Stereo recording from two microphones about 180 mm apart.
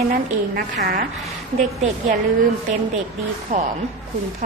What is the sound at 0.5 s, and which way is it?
Speech, 55° right (ahead or behind).